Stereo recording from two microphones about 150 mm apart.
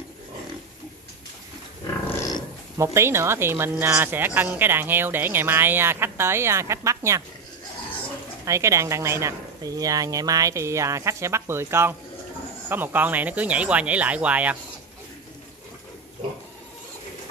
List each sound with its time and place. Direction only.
2.0 s dog: 25° left (ahead or behind)
2.8 s speech: 20° right (ahead or behind)
8.5 s a woman's voice: 20° right (ahead or behind)